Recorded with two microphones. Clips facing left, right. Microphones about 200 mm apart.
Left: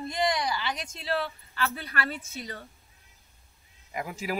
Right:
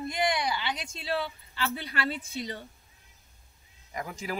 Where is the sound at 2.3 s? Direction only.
25° right (ahead or behind).